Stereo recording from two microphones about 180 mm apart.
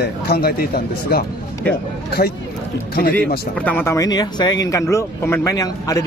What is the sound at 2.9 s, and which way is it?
Speech, 55° left (ahead or behind).